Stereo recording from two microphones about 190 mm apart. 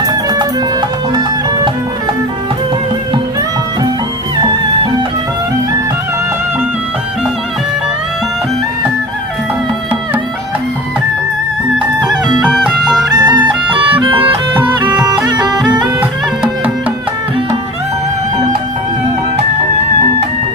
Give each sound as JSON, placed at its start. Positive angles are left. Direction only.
{"t": 0.0, "sound": "music", "side_deg": -20}
{"t": 12.4, "sound": "music", "side_deg": -5}
{"t": 13.1, "sound": "music", "side_deg": -20}